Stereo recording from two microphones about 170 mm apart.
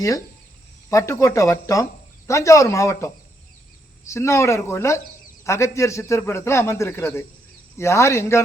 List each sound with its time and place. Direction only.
0.9 s a man's voice: 20° left (ahead or behind)